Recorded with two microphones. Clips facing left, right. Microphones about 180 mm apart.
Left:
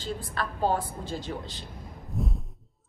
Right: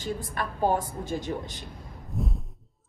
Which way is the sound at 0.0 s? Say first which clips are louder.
Right 1 dB; 15° right (ahead or behind).